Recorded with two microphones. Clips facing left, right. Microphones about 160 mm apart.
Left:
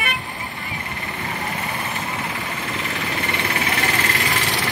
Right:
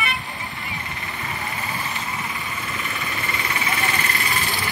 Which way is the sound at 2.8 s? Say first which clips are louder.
Left 4 dB; 80° left.